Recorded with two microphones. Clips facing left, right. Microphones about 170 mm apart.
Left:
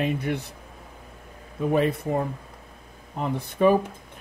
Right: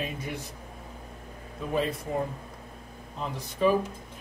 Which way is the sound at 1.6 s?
60° left (ahead or behind).